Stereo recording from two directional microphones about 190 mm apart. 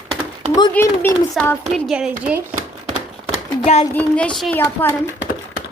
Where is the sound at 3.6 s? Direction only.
35° left (ahead or behind).